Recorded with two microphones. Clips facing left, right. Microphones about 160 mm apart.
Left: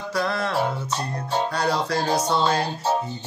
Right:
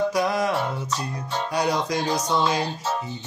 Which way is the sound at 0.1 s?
15° right (ahead or behind).